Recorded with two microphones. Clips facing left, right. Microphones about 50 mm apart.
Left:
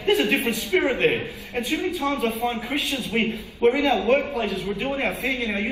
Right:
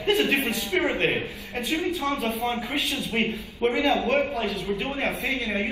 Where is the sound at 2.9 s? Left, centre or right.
Left.